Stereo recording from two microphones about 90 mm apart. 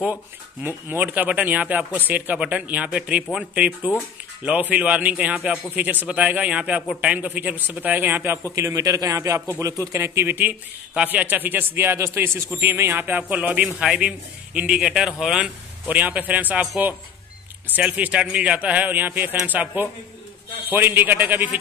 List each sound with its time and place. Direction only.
0.0 s a man's voice: 20° right (ahead or behind)
8.5 s a man's voice: 35° right (ahead or behind); by 15.5 s 5° right (ahead or behind)
15.9 s a man's voice: 15° right (ahead or behind)